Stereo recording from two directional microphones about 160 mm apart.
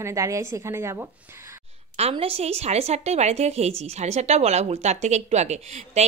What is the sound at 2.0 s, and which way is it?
A woman's voice, 40° right (ahead or behind).